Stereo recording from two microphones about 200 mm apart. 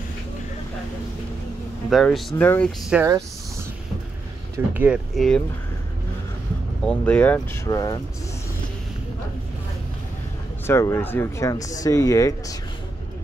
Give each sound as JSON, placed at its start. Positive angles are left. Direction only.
{"t": 1.9, "sound": "speech", "side_deg": 0}
{"t": 2.9, "sound": "speech", "side_deg": -15}
{"t": 4.7, "sound": "speech", "side_deg": -5}
{"t": 6.8, "sound": "speech", "side_deg": 5}
{"t": 10.7, "sound": "speech", "side_deg": 15}